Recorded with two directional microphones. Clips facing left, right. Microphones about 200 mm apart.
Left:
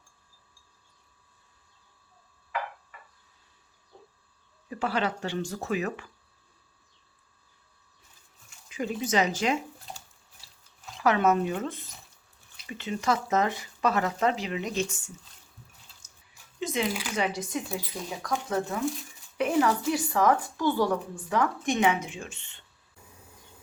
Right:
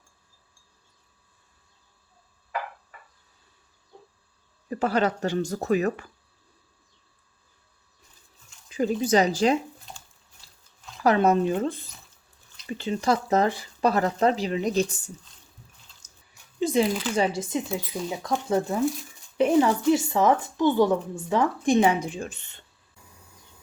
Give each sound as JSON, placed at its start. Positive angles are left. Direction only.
{"t": 4.7, "sound": "speech", "side_deg": -40}
{"t": 8.7, "sound": "speech", "side_deg": -35}
{"t": 11.0, "sound": "speech", "side_deg": -35}
{"t": 16.6, "sound": "a sound", "side_deg": -35}
{"t": 17.2, "sound": "speech", "side_deg": -30}